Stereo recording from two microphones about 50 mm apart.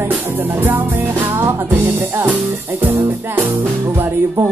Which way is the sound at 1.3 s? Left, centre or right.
Right.